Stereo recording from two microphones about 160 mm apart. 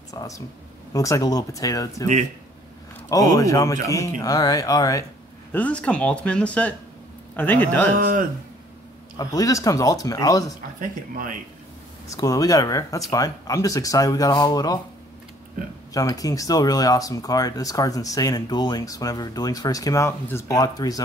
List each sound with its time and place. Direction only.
0.1 s speech: 20° left (ahead or behind)
3.1 s speech: 20° left (ahead or behind)
5.5 s speech: 10° left (ahead or behind)
7.9 s speech: 60° right (ahead or behind)
9.1 s speech: 20° left (ahead or behind)
10.8 s speech: 60° right (ahead or behind)
12.1 s speech: 20° left (ahead or behind)
15.9 s speech: 20° left (ahead or behind)